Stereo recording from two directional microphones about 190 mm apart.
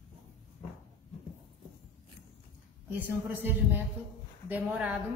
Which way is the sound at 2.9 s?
10° right (ahead or behind).